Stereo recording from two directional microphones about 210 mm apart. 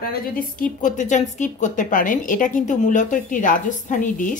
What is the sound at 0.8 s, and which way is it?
A woman's voice, 35° left (ahead or behind).